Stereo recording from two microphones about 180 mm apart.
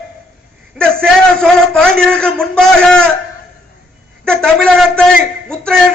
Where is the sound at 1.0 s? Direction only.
5° left (ahead or behind).